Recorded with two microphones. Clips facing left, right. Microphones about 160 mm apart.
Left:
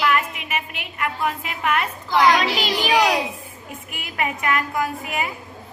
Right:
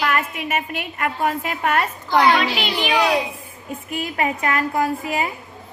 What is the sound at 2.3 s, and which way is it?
Speech, 40° left (ahead or behind).